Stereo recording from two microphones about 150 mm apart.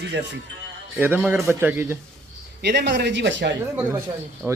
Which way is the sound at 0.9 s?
10° right (ahead or behind).